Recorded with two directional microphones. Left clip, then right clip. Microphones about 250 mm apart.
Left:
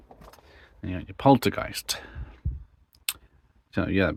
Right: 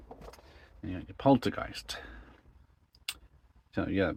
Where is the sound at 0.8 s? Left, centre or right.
Left.